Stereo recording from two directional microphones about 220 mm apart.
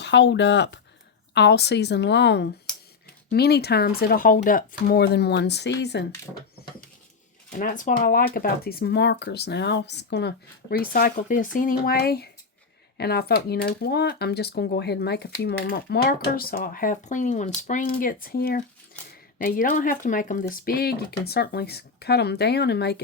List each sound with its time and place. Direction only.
0.0 s speech: 50° left (ahead or behind)
7.6 s speech: 35° left (ahead or behind)